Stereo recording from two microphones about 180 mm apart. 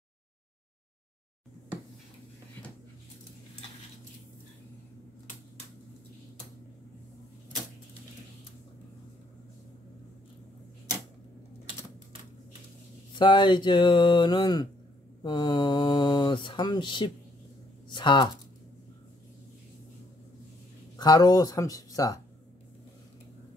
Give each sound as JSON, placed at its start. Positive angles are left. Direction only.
{"t": 13.2, "sound": "speech", "side_deg": 25}
{"t": 20.9, "sound": "speech", "side_deg": 20}